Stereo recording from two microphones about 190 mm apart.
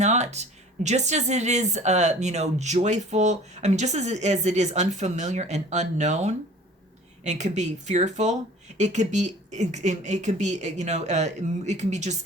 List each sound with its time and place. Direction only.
0.0 s speech: 35° right (ahead or behind)